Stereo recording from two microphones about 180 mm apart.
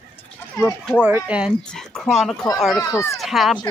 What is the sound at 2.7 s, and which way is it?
Speech, 15° left (ahead or behind).